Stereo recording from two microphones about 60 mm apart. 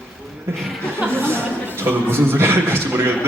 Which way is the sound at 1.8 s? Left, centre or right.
Right.